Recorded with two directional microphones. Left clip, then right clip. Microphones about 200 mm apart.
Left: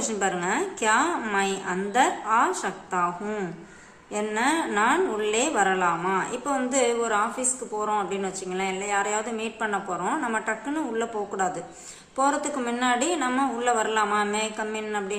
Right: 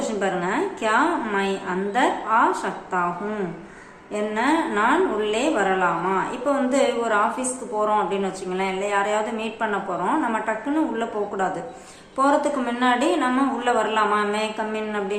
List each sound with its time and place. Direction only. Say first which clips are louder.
0.2 s a woman's voice: right 1 dB; 20° left (ahead or behind)